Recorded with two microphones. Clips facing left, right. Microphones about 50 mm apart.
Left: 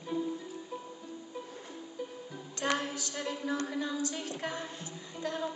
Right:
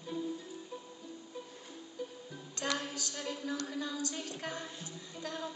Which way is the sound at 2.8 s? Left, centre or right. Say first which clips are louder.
Left 4 dB; left.